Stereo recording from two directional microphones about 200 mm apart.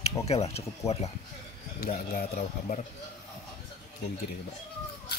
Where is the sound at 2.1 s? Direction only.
45° left (ahead or behind).